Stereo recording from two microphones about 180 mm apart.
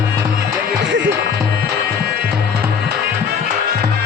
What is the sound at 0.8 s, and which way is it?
Music, 75° right (ahead or behind).